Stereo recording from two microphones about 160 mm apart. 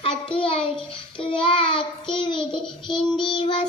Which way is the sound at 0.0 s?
35° left (ahead or behind).